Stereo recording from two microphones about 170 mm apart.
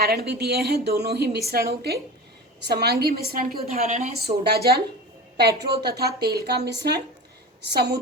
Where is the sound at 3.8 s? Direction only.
40° right (ahead or behind).